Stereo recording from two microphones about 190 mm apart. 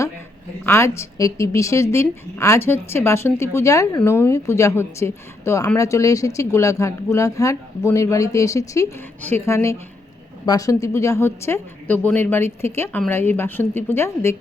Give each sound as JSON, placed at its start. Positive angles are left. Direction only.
{"t": 0.6, "sound": "a woman's voice", "side_deg": 15}